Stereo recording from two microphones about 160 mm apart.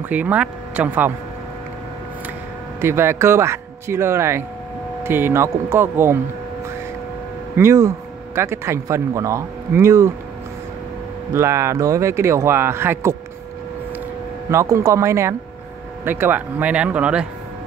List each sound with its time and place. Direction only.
0.1 s speech: 10° right (ahead or behind)
2.8 s speech: 15° right (ahead or behind)
7.5 s speech: 15° right (ahead or behind)
11.3 s speech: 15° right (ahead or behind)
14.5 s speech: 20° right (ahead or behind)